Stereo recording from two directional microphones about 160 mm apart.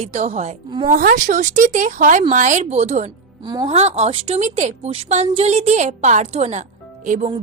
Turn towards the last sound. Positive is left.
turn(degrees=-50)  # may be behind; listen again after turning